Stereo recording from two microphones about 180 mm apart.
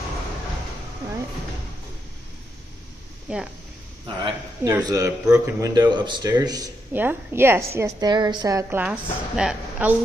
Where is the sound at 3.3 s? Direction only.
5° right (ahead or behind).